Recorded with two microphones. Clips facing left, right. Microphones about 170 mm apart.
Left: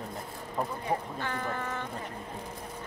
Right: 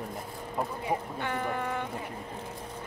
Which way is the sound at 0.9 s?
15° right (ahead or behind).